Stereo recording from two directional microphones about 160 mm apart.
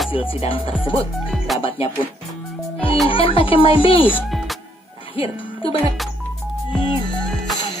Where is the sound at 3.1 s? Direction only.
35° left (ahead or behind).